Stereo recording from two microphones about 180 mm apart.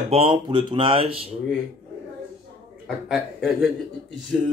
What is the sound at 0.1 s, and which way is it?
Speech, 30° right (ahead or behind).